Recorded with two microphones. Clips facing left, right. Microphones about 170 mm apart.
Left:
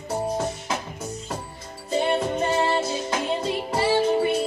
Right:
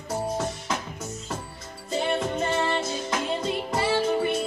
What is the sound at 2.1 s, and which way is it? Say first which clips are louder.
Music: left 1 dB; 30° left (ahead or behind).